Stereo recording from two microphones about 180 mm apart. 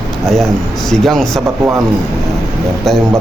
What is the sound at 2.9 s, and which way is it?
Speech, centre (ahead or behind).